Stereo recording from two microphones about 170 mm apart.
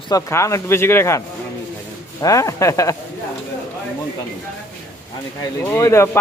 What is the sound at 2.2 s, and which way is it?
Speech, 20° left (ahead or behind).